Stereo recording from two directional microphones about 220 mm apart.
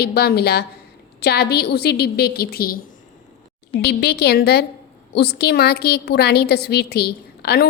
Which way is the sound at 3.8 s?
50° left (ahead or behind).